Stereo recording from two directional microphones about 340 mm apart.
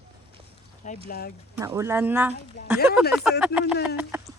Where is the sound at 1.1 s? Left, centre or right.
Left.